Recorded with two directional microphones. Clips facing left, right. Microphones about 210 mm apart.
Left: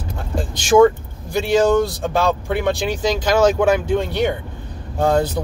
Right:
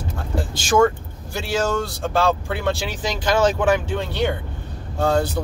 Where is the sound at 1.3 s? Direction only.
15° left (ahead or behind).